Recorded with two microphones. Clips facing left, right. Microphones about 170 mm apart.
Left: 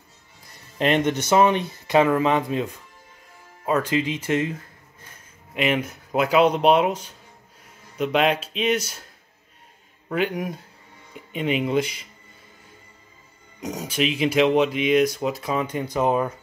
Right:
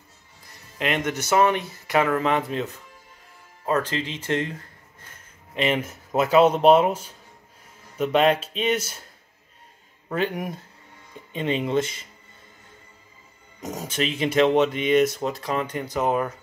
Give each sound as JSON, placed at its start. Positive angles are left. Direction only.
{"t": 0.7, "sound": "speech", "side_deg": 30}
{"t": 1.2, "sound": "speech", "side_deg": 20}
{"t": 5.5, "sound": "speech", "side_deg": 5}
{"t": 10.1, "sound": "speech", "side_deg": 0}
{"t": 13.6, "sound": "speech", "side_deg": 0}